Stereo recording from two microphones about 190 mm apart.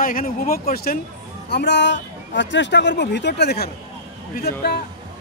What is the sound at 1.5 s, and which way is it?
Speech, 65° left (ahead or behind).